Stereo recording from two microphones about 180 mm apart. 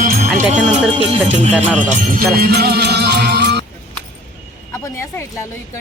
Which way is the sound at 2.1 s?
60° right (ahead or behind).